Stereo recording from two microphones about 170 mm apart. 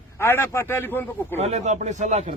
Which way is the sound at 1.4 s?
40° right (ahead or behind).